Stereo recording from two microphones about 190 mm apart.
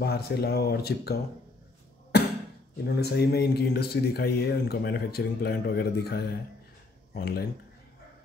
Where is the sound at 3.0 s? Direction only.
60° left (ahead or behind).